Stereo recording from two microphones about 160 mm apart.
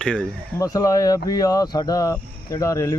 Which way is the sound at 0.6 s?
20° left (ahead or behind).